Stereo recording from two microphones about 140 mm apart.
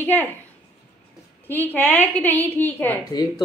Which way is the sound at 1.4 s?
15° left (ahead or behind).